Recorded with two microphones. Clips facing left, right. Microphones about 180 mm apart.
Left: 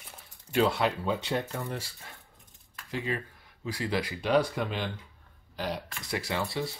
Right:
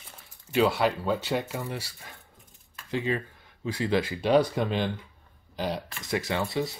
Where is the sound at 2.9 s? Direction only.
20° right (ahead or behind).